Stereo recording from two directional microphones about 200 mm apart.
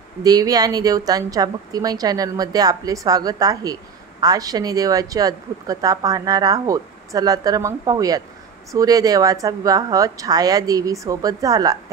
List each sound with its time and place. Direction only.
0.2 s speech: 20° right (ahead or behind)